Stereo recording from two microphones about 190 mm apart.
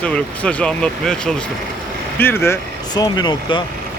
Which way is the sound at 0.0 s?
5° left (ahead or behind).